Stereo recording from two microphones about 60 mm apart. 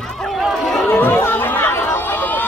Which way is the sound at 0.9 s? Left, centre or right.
Left.